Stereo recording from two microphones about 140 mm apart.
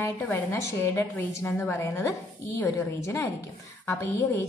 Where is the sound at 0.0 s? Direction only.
15° left (ahead or behind).